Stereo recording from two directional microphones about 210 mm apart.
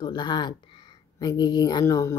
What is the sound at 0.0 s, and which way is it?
Speech, 20° left (ahead or behind).